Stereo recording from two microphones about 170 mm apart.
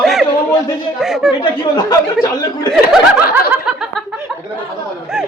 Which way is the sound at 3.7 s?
Centre (ahead or behind).